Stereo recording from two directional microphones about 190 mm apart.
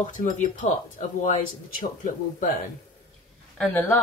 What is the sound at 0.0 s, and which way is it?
Speech, 45° left (ahead or behind).